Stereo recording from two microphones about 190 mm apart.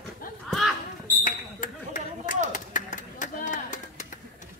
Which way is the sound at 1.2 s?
45° left (ahead or behind).